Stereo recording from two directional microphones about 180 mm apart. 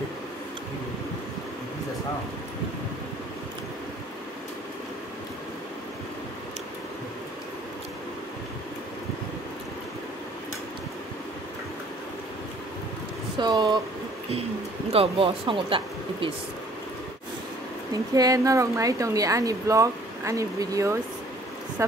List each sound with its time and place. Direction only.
13.4 s a sound: 25° right (ahead or behind)
14.9 s speech: 30° right (ahead or behind)
18.1 s speech: 20° right (ahead or behind)